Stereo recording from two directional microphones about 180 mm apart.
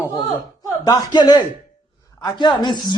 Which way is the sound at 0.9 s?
25° left (ahead or behind).